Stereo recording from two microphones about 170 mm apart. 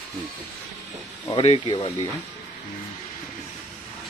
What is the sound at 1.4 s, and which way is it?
Speech, 30° left (ahead or behind).